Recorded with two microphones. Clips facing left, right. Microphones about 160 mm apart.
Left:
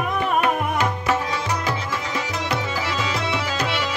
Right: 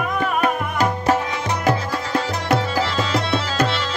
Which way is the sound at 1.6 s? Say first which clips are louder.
Right 5 dB; 50° right (ahead or behind).